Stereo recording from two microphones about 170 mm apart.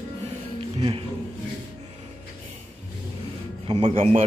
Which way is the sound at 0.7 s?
35° right (ahead or behind).